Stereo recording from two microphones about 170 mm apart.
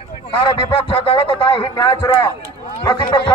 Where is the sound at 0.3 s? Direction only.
30° left (ahead or behind).